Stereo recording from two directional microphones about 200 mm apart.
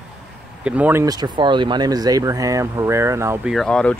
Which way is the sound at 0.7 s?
10° right (ahead or behind).